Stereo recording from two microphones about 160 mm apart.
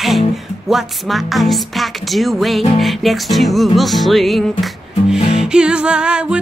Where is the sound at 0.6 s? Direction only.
Centre (ahead or behind).